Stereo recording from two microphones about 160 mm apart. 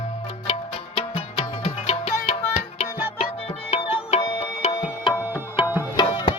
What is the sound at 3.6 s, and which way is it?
Tabla, 40° left (ahead or behind).